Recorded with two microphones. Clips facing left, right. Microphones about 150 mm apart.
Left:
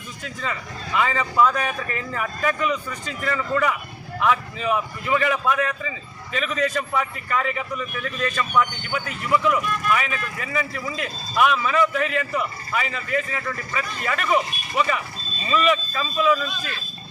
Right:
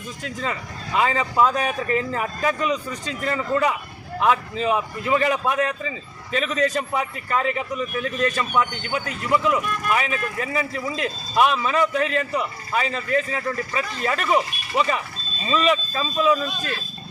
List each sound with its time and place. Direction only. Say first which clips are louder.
0.9 s a man's voice: right 1 dB; 35° right (ahead or behind)
15.4 s speech: even; 30° right (ahead or behind)